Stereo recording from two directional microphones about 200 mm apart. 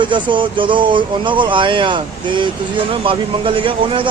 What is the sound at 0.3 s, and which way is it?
Speech, 25° right (ahead or behind).